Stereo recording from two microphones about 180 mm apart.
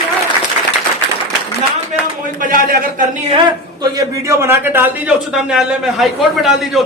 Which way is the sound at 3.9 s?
15° right (ahead or behind).